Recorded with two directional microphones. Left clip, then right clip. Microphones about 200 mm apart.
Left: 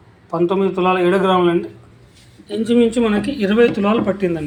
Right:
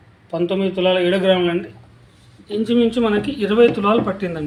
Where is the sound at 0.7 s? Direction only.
5° right (ahead or behind).